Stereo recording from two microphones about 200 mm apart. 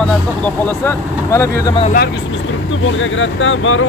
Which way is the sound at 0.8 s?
15° left (ahead or behind).